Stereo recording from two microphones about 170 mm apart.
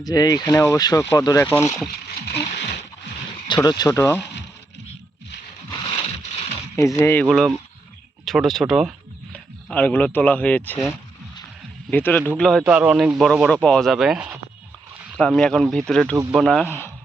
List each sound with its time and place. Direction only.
0.0 s speech: 20° left (ahead or behind)
3.5 s speech: 25° left (ahead or behind)
5.7 s a sound: 30° left (ahead or behind)
6.7 s speech: 15° left (ahead or behind)
7.3 s speech: centre (ahead or behind)
11.9 s speech: 10° left (ahead or behind)
12.6 s speech: 10° right (ahead or behind)